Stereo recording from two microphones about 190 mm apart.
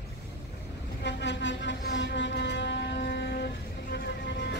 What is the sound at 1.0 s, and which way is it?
Vehicle, 65° left (ahead or behind).